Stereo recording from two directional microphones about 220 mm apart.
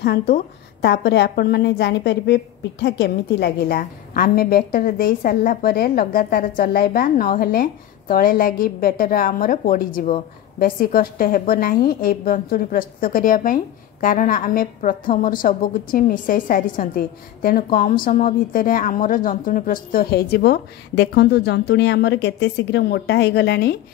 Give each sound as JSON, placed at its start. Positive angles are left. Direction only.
{"t": 0.0, "sound": "a woman's voice", "side_deg": 45}